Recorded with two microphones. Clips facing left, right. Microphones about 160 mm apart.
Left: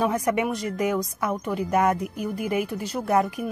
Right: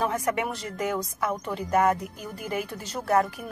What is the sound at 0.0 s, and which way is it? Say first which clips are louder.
Speech: left 3 dB; 20° left (ahead or behind).